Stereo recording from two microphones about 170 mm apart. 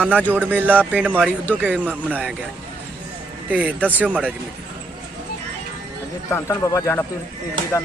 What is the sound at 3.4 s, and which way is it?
Speech, 10° right (ahead or behind).